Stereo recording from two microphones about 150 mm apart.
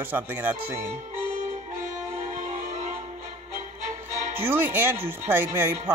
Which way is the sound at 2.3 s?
55° right (ahead or behind).